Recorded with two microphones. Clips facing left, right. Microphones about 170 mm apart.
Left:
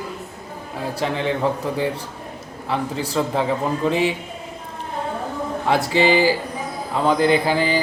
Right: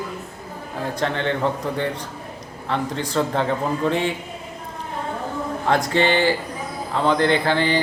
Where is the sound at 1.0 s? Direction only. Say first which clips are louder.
Left 1 dB; 5° left (ahead or behind).